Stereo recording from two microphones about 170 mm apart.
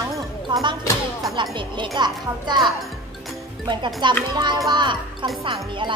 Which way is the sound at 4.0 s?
25° right (ahead or behind).